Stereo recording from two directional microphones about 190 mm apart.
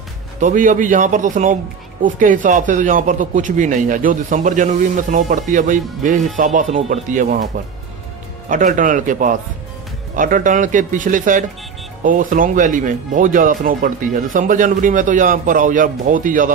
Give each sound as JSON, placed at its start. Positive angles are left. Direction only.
{"t": 0.4, "sound": "speech", "side_deg": -40}
{"t": 8.5, "sound": "speech", "side_deg": -45}